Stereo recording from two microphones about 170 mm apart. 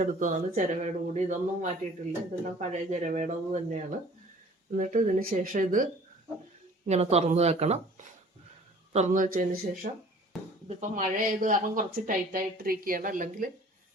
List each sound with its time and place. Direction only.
0.0 s speech: 50° right (ahead or behind)
4.7 s speech: 50° right (ahead or behind)
6.8 s speech: 40° right (ahead or behind)
10.3 s bouncing: centre (ahead or behind)
10.8 s speech: 45° right (ahead or behind)